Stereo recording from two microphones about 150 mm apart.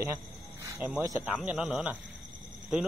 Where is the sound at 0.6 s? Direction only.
20° right (ahead or behind).